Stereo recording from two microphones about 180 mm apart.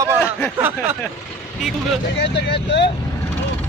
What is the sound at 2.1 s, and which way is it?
Speech, 70° left (ahead or behind).